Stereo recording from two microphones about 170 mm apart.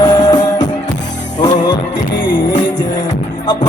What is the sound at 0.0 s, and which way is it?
Music, 25° left (ahead or behind).